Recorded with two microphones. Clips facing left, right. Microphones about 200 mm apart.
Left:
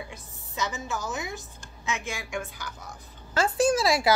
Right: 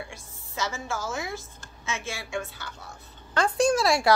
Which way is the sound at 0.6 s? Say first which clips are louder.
Even; 20° left (ahead or behind).